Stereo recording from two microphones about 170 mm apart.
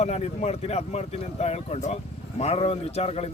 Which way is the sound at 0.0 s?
40° left (ahead or behind).